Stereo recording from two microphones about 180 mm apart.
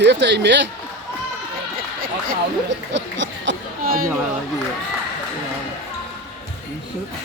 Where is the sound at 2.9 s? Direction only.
85° right.